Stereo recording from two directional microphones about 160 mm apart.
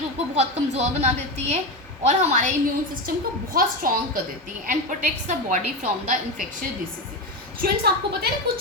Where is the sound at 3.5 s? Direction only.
65° right (ahead or behind).